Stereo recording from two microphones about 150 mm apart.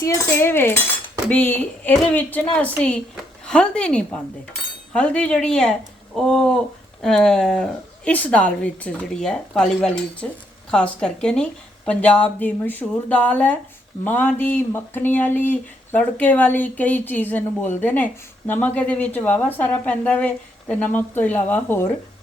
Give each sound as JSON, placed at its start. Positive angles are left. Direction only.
{"t": 0.0, "sound": "speech", "side_deg": 20}